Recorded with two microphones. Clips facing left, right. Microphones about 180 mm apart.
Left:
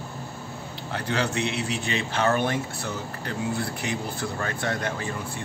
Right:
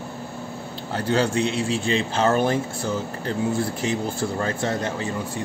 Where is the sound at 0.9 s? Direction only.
30° right (ahead or behind).